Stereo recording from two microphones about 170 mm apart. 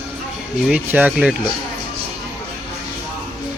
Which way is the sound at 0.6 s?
10° right (ahead or behind).